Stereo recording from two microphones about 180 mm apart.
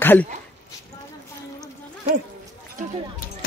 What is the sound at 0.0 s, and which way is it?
Speech, 10° left (ahead or behind).